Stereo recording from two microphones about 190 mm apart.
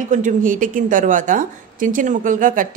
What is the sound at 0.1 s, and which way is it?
A woman's voice, 45° right (ahead or behind).